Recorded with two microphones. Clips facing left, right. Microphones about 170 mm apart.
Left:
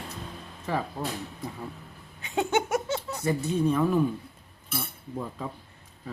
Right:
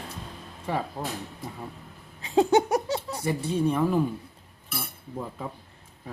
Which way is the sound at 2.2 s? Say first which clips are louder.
Right 6 dB; 35° right (ahead or behind).